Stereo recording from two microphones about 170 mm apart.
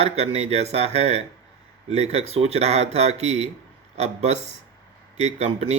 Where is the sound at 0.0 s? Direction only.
40° right (ahead or behind).